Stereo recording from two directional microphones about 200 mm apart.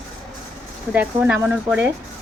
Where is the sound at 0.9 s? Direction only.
10° right (ahead or behind).